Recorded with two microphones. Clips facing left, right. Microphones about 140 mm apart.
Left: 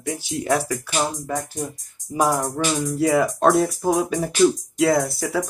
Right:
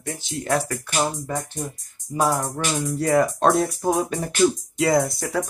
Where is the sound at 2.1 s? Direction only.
15° left (ahead or behind).